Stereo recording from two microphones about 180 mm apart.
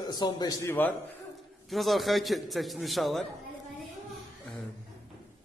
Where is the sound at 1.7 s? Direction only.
Centre (ahead or behind).